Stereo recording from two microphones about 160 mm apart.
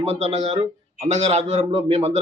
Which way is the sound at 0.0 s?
40° right (ahead or behind).